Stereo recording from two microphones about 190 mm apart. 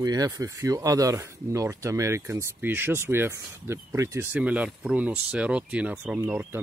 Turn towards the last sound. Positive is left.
turn(degrees=-10)  # may be behind; listen again after turning